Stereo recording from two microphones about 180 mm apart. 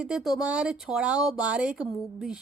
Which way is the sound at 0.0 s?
5° right (ahead or behind).